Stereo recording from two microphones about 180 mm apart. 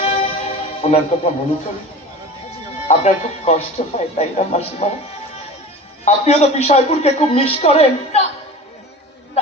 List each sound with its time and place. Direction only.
0.0 s music: 30° left (ahead or behind)
2.8 s a man's voice: 35° left (ahead or behind)
6.1 s a man's voice: 35° left (ahead or behind)